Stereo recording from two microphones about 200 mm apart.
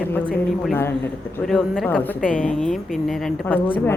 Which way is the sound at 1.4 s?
Centre (ahead or behind).